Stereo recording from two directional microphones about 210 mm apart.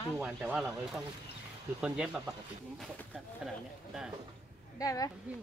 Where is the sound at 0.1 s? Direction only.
Centre (ahead or behind).